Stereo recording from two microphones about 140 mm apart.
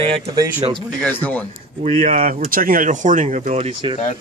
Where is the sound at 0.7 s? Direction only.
10° left (ahead or behind).